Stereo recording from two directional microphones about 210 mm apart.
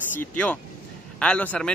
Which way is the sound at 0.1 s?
10° left (ahead or behind).